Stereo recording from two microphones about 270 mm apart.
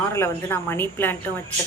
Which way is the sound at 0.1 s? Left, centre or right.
Centre.